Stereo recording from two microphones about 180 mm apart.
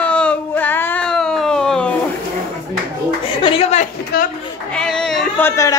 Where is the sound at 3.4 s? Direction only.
30° left (ahead or behind).